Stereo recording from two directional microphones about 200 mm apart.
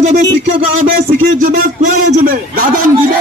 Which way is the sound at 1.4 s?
40° right (ahead or behind).